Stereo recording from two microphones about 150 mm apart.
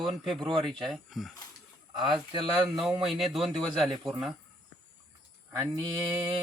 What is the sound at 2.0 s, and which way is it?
Speech, 30° right (ahead or behind).